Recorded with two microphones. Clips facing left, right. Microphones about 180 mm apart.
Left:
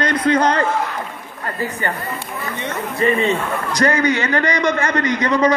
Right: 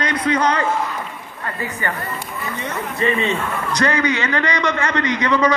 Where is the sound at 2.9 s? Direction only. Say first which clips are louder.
Left 3 dB; 40° left (ahead or behind).